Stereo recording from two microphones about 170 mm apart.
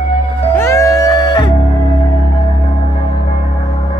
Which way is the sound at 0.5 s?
20° left (ahead or behind).